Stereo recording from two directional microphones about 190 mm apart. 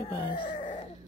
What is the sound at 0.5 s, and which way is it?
Grunt, 40° left (ahead or behind).